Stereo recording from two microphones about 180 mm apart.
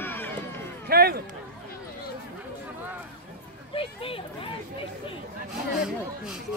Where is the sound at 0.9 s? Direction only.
60° right (ahead or behind).